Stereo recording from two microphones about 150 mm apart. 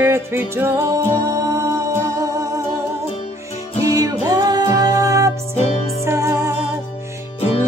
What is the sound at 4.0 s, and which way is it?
Music, 25° right (ahead or behind).